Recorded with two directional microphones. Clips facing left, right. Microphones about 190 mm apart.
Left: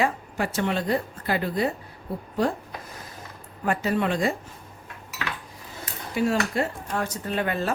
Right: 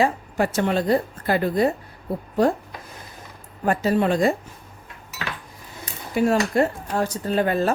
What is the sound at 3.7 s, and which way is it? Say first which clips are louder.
Speech: right 4 dB; 35° right (ahead or behind).